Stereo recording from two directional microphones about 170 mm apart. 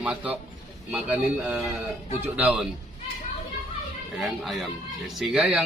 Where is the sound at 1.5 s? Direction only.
Centre (ahead or behind).